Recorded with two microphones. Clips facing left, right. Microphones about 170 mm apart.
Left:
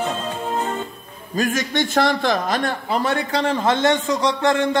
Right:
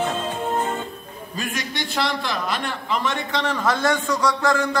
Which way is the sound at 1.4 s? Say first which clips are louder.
Left 8 dB; 45° left (ahead or behind).